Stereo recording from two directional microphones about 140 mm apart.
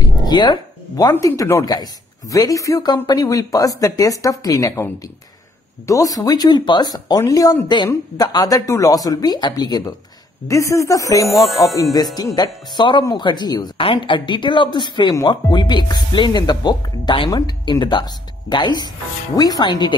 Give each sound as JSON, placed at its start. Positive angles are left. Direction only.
{"t": 0.2, "sound": "a sound", "side_deg": 30}
{"t": 1.1, "sound": "speech", "side_deg": 25}
{"t": 11.2, "sound": "music", "side_deg": 0}
{"t": 11.6, "sound": "speech", "side_deg": 25}